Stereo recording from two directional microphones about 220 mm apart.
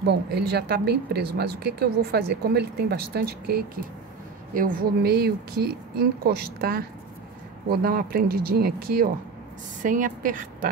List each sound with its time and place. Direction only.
0.0 s a woman's voice: 50° right (ahead or behind)